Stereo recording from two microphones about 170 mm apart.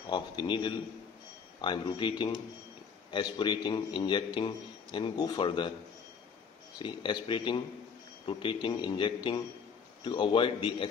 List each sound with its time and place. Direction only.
0.0 s a man's voice: 30° left (ahead or behind)
6.8 s a man's voice: 25° left (ahead or behind)